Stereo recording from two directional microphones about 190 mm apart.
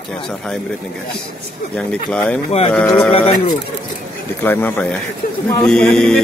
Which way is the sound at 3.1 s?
30° left (ahead or behind).